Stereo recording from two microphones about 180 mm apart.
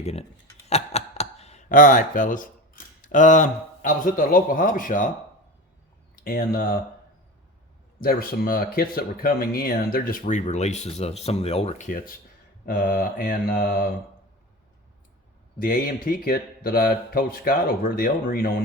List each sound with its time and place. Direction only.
0.0 s speech: 35° left (ahead or behind)
6.2 s speech: 55° left (ahead or behind)
8.0 s speech: 55° left (ahead or behind)
15.5 s speech: 50° left (ahead or behind)